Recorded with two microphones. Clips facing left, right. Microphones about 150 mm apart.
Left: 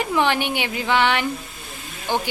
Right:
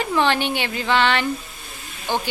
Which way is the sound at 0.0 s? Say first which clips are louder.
Even; 15° left (ahead or behind).